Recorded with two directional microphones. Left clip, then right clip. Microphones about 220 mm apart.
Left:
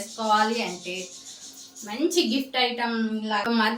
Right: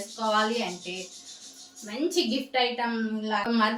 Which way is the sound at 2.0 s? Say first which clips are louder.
Left 3 dB; 10° left (ahead or behind).